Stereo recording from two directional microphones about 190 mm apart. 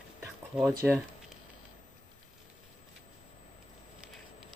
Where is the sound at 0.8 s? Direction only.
5° right (ahead or behind).